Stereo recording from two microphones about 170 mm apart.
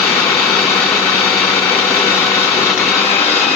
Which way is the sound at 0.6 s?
15° left (ahead or behind).